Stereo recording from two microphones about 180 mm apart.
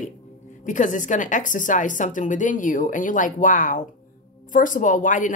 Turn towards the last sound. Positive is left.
turn(degrees=45)  # may be behind; listen again after turning